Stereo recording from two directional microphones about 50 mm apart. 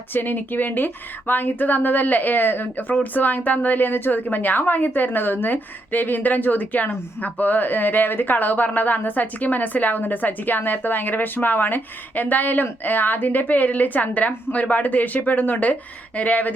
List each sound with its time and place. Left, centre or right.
0.1 s a woman's voice: left